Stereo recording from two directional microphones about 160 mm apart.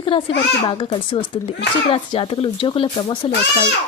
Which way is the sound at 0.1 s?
35° left (ahead or behind).